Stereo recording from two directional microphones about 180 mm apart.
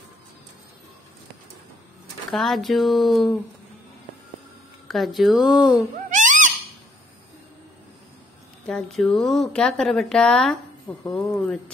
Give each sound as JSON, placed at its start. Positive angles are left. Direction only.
{"t": 2.3, "sound": "speech", "side_deg": 0}
{"t": 4.8, "sound": "speech", "side_deg": 0}
{"t": 6.0, "sound": "owl", "side_deg": -45}
{"t": 8.6, "sound": "speech", "side_deg": 5}